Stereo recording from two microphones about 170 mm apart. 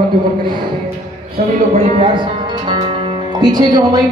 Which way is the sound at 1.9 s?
30° right (ahead or behind).